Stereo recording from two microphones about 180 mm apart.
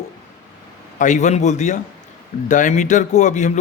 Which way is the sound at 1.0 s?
40° left (ahead or behind).